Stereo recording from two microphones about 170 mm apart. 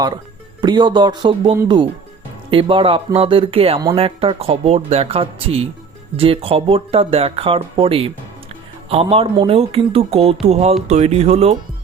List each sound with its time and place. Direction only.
0.6 s speech: 25° right (ahead or behind)